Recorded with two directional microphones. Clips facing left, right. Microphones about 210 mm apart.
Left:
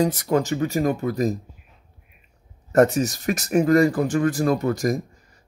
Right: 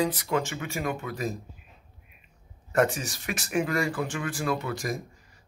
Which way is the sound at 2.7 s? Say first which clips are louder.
Left 8 dB; 40° left (ahead or behind).